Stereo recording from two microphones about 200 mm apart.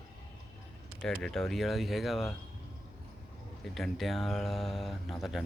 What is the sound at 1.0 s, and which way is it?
Speech, 5° left (ahead or behind).